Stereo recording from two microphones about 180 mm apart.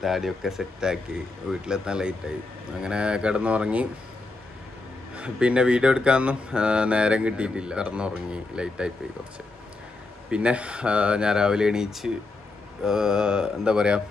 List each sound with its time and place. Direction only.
0.0 s speech: centre (ahead or behind)
5.1 s speech: 5° right (ahead or behind)
10.3 s speech: 5° right (ahead or behind)